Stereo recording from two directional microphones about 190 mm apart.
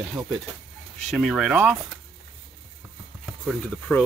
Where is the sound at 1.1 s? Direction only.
Centre (ahead or behind).